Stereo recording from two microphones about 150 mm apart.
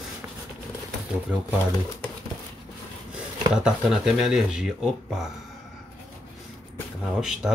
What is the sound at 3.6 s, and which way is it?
Speech, 5° right (ahead or behind).